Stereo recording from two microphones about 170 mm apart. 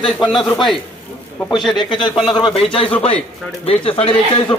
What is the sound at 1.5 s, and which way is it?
Speech, 25° left (ahead or behind).